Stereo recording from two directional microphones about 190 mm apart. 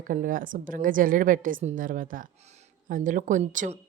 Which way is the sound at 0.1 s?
45° right (ahead or behind).